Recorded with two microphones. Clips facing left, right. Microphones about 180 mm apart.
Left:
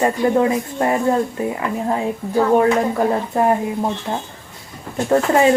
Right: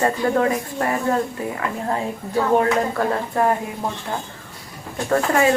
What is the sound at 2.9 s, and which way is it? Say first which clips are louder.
A woman's voice: left 3 dB; 20° left (ahead or behind).